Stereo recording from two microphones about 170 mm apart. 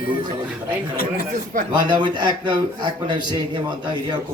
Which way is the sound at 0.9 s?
60° left (ahead or behind).